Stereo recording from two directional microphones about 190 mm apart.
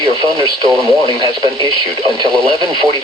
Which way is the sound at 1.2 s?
25° right (ahead or behind).